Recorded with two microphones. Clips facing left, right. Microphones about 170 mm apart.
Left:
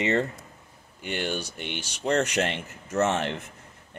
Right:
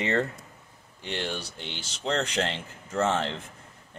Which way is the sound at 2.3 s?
20° left (ahead or behind).